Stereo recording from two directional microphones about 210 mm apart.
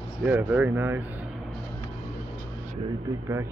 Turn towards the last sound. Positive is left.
turn(degrees=-15)  # may be behind; listen again after turning